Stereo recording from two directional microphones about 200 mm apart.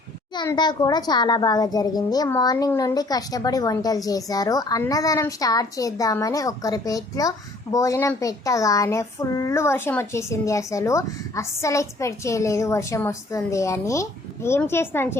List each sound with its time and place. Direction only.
0.3 s a child's voice: 20° left (ahead or behind)